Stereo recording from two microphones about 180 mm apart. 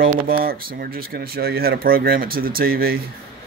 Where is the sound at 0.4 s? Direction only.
55° right (ahead or behind).